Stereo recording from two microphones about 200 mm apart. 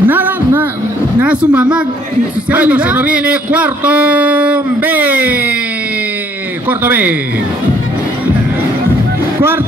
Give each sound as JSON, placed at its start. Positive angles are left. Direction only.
{"t": 0.0, "sound": "a sound", "side_deg": -10}
{"t": 1.2, "sound": "speech", "side_deg": -5}
{"t": 6.8, "sound": "speech", "side_deg": -10}